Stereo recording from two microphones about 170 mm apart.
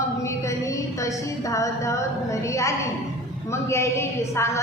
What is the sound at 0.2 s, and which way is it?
A woman's voice, 20° left (ahead or behind).